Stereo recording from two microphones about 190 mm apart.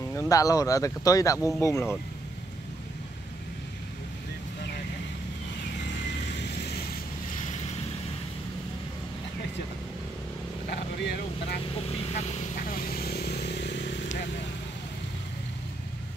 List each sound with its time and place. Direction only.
0.1 s speech: 15° left (ahead or behind)
11.7 s vehicle: 35° left (ahead or behind)
12.6 s vehicle: 50° left (ahead or behind)